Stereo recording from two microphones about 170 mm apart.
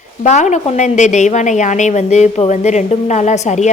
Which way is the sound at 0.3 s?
45° left (ahead or behind).